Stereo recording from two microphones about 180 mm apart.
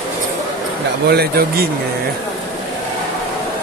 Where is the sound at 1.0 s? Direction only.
60° right (ahead or behind).